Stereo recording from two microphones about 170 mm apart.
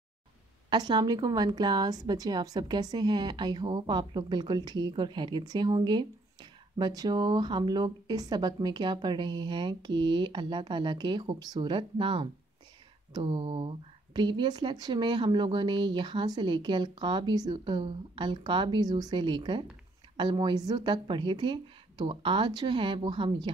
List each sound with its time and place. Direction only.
0.7 s a woman's voice: 25° right (ahead or behind)